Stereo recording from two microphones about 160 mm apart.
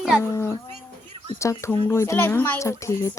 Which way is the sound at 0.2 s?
15° left (ahead or behind).